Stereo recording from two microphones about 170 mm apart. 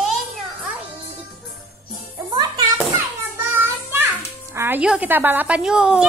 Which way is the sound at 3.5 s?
15° right (ahead or behind).